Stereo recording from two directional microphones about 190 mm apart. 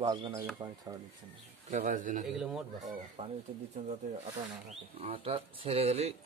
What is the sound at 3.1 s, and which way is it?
Speech, 35° right (ahead or behind).